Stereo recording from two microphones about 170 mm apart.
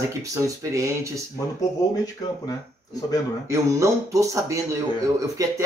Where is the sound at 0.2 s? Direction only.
20° right (ahead or behind).